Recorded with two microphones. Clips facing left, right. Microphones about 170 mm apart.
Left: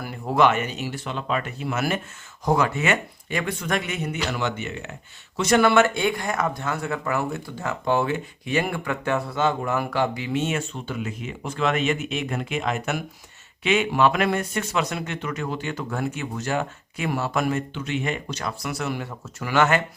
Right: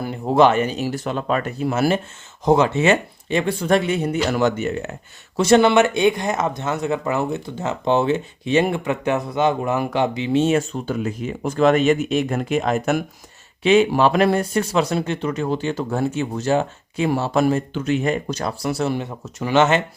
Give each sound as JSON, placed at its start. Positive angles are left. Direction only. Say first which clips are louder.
{"t": 0.0, "sound": "speech", "louder": "right 5 dB", "side_deg": -25}
{"t": 5.4, "sound": "speech", "louder": "right 4 dB", "side_deg": -25}